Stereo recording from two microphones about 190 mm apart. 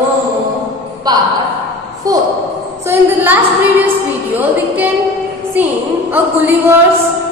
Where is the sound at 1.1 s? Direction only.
20° right (ahead or behind).